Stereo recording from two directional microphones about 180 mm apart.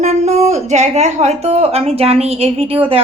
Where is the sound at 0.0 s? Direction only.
40° right (ahead or behind).